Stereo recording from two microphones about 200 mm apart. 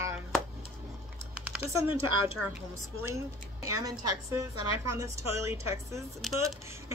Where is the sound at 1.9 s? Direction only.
90° right.